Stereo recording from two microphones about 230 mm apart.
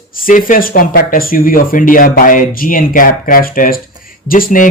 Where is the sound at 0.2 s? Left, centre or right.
Left.